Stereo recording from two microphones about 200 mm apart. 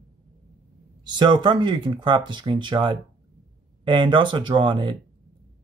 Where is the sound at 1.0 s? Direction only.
20° right (ahead or behind).